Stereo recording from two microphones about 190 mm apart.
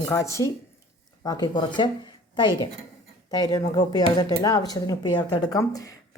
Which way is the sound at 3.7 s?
20° left (ahead or behind).